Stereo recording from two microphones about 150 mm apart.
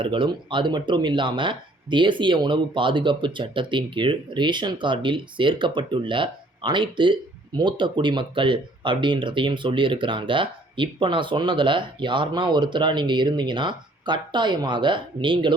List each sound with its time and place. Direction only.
0.0 s speech: 35° right (ahead or behind)